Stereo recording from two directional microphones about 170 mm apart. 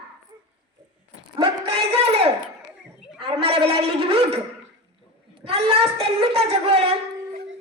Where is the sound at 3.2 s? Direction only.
35° right (ahead or behind).